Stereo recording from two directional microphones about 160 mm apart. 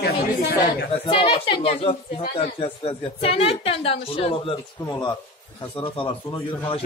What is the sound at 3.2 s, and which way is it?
Speech, 35° left (ahead or behind).